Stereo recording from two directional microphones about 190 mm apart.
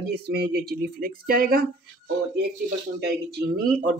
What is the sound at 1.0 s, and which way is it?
Speech, 50° right (ahead or behind).